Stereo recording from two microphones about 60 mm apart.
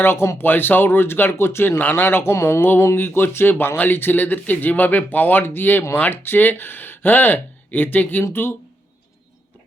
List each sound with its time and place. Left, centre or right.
0.0 s speech: left